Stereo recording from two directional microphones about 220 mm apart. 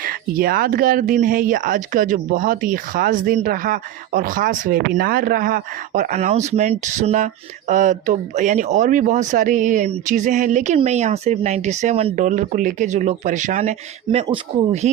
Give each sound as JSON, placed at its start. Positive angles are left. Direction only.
{"t": 0.0, "sound": "speech", "side_deg": -40}